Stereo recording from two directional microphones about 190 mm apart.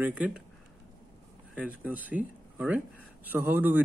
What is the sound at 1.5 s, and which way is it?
Speech, 5° right (ahead or behind).